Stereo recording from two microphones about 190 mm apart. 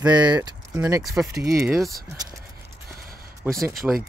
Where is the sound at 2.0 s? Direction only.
15° right (ahead or behind).